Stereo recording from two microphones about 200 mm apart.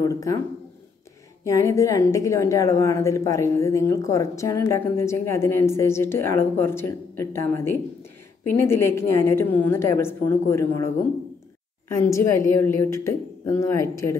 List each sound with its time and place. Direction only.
0.0 s a woman's voice: 15° left (ahead or behind)
1.4 s a woman's voice: 15° left (ahead or behind)
11.9 s a woman's voice: 15° left (ahead or behind)